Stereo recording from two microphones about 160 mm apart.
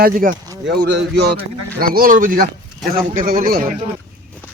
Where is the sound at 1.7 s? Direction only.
65° right (ahead or behind).